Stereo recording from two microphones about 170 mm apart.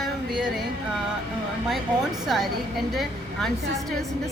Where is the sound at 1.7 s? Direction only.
Centre (ahead or behind).